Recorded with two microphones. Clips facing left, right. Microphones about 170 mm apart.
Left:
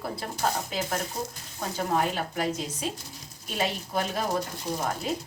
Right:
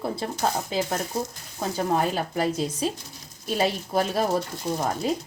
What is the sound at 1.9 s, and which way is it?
A woman's voice, 35° right (ahead or behind).